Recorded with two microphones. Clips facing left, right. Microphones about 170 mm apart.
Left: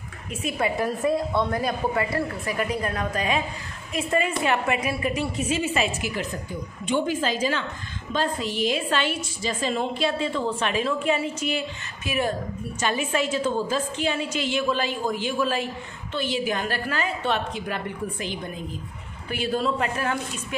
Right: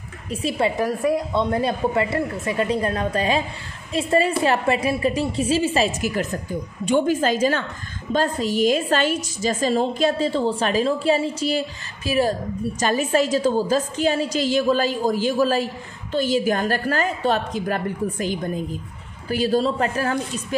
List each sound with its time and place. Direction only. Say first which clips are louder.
0.3 s a woman's voice: right 4 dB; 30° right (ahead or behind)